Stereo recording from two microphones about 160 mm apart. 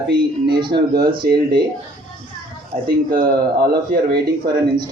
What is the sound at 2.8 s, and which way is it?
Speech, 65° right (ahead or behind).